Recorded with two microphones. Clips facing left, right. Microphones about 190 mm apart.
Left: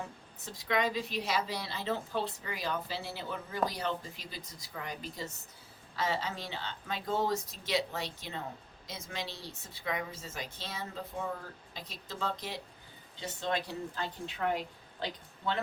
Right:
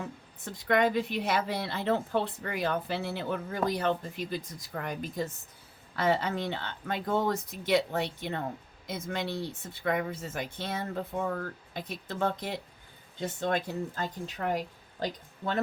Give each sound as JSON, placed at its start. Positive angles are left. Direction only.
{"t": 0.4, "sound": "speech", "side_deg": -55}